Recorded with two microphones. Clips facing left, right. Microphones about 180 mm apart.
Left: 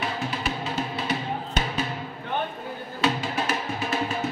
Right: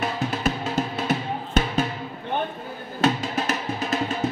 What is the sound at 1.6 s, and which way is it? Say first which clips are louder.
Music: right 7 dB; 50° right (ahead or behind).